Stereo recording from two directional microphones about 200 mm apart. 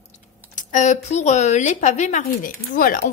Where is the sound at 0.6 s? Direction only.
40° left (ahead or behind).